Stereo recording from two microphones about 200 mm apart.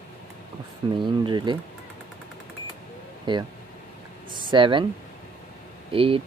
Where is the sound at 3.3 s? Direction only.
25° right (ahead or behind).